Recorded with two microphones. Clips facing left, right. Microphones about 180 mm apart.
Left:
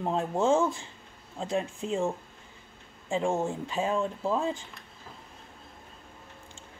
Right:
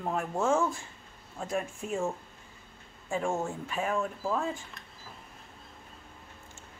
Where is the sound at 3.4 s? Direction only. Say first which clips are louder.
Left 3 dB; 25° left (ahead or behind).